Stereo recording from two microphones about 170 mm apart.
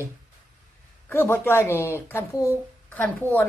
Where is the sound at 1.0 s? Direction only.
10° left (ahead or behind).